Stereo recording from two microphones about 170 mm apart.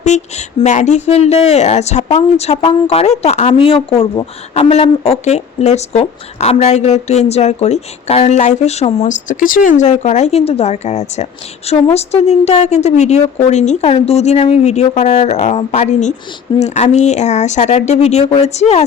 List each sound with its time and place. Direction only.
0.0 s speech: 40° left (ahead or behind)